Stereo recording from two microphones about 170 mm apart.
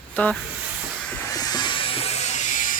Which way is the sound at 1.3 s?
20° left (ahead or behind).